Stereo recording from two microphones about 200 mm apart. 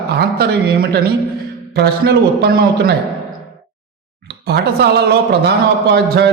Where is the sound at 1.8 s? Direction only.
55° right (ahead or behind).